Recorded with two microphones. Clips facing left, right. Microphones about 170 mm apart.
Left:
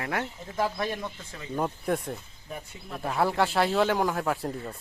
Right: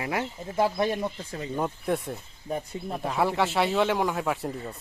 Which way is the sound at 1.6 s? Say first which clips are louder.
Right 1 dB; centre (ahead or behind).